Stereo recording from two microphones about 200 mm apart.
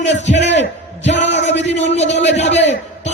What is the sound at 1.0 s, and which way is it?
Music, 60° left (ahead or behind).